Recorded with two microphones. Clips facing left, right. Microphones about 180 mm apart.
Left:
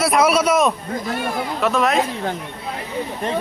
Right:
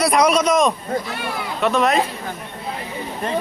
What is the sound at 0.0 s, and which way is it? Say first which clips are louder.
A man's voice: even; 5° left (ahead or behind).